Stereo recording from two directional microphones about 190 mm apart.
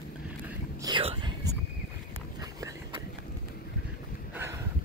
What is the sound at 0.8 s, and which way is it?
Whispering, 25° right (ahead or behind).